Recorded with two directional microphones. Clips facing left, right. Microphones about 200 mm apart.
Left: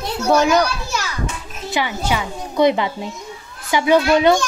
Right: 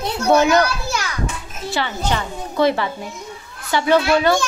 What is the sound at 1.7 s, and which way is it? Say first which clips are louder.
A child's voice: left 1 dB; 10° left (ahead or behind).